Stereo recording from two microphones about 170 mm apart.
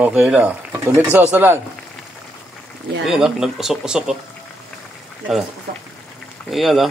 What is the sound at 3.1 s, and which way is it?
Speech, centre (ahead or behind).